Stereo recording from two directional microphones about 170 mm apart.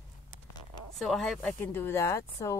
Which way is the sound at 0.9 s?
Centre (ahead or behind).